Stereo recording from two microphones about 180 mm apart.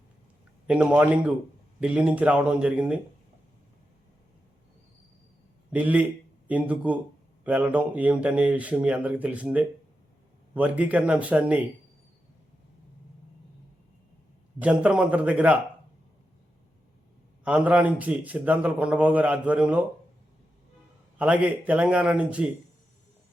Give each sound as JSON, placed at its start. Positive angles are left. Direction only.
{"t": 0.7, "sound": "a man's voice", "side_deg": -5}
{"t": 5.7, "sound": "a man's voice", "side_deg": -10}
{"t": 14.6, "sound": "a man's voice", "side_deg": -5}
{"t": 17.4, "sound": "a man's voice", "side_deg": -5}
{"t": 21.2, "sound": "a man's voice", "side_deg": -10}